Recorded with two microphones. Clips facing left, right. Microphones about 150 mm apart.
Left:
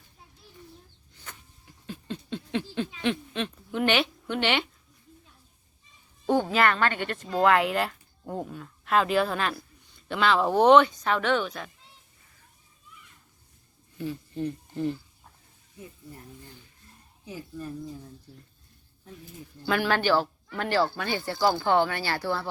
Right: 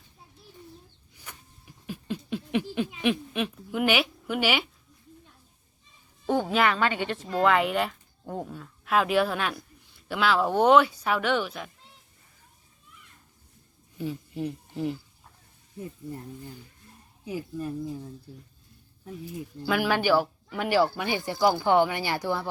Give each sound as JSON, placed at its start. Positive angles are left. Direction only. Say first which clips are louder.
{"t": 1.1, "sound": "a sound", "louder": "even", "side_deg": -10}
{"t": 6.2, "sound": "a sound", "louder": "left 1 dB", "side_deg": 0}
{"t": 7.1, "sound": "speech", "louder": "left 2 dB", "side_deg": 0}
{"t": 14.0, "sound": "speech", "louder": "even", "side_deg": -10}
{"t": 17.2, "sound": "speech", "louder": "right 5 dB", "side_deg": -10}
{"t": 19.6, "sound": "speech", "louder": "even", "side_deg": -5}